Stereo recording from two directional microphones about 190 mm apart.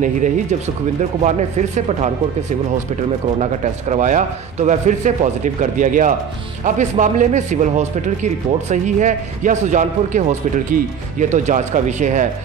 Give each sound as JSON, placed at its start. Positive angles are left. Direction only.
{"t": 3.3, "sound": "speech", "side_deg": -40}